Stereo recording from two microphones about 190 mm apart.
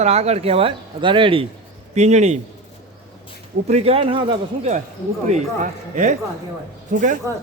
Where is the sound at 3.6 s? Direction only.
35° right (ahead or behind).